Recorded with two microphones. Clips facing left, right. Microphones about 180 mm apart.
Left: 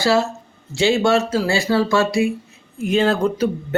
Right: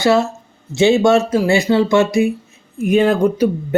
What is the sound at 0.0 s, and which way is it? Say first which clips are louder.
Speech: right 3 dB; 20° right (ahead or behind).